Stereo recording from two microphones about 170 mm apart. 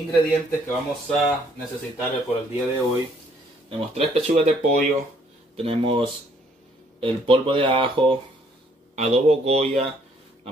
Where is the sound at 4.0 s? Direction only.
40° right (ahead or behind).